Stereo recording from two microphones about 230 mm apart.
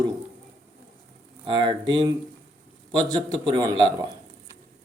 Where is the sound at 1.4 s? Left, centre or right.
Right.